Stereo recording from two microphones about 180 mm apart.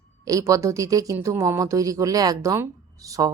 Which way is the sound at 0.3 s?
20° right (ahead or behind).